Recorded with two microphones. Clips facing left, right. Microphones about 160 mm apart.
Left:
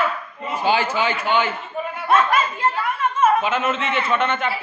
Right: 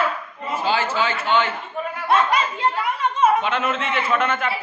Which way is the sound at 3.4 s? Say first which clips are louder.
Left 1 dB; 5° left (ahead or behind).